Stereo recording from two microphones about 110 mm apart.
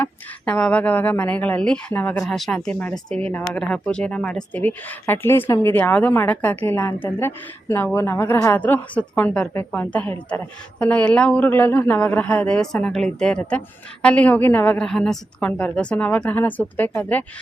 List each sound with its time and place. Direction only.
0.0 s a woman's voice: 10° left (ahead or behind)
2.2 s a woman's voice: centre (ahead or behind); by 8.6 s 25° left (ahead or behind)
8.6 s a woman's voice: 15° left (ahead or behind)
14.8 s a woman's voice: 5° left (ahead or behind)